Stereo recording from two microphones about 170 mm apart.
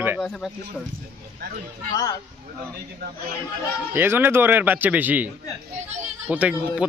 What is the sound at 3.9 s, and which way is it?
Speech, 10° right (ahead or behind).